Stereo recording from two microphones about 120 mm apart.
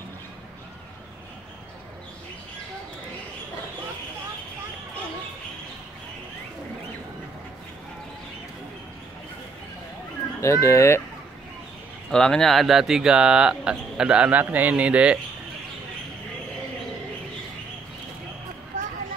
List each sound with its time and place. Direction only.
10.4 s speech: 25° left (ahead or behind)
12.1 s speech: 5° left (ahead or behind); by 15.1 s 10° right (ahead or behind)